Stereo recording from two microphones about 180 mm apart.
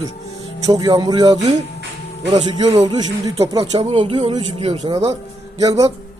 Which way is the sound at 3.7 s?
30° right (ahead or behind).